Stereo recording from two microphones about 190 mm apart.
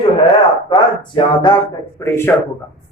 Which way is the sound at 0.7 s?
25° left (ahead or behind).